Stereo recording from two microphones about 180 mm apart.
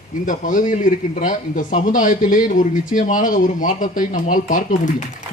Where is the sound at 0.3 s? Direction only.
45° left (ahead or behind).